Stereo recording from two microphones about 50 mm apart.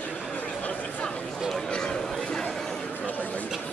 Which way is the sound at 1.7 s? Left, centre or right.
Centre.